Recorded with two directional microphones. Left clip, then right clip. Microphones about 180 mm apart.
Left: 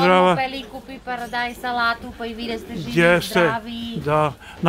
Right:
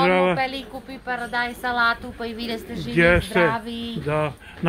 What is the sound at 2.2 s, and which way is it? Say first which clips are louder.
Speech: left 1 dB; 30° right (ahead or behind).